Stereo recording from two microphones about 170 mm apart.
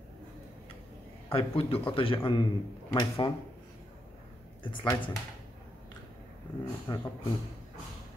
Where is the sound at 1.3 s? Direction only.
35° left (ahead or behind).